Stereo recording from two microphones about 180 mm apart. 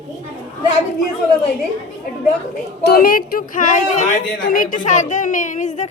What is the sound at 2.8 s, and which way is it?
A woman's voice, 55° left (ahead or behind).